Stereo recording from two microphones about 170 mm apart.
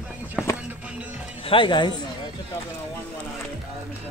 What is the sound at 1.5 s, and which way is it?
Speech, 30° left (ahead or behind).